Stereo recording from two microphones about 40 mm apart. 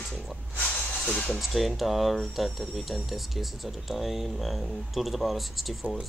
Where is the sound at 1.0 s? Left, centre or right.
Left.